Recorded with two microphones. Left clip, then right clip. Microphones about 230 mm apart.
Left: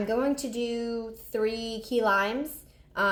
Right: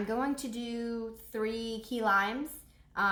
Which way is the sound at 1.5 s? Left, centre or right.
Centre.